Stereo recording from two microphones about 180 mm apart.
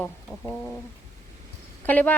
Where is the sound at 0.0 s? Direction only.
5° left (ahead or behind).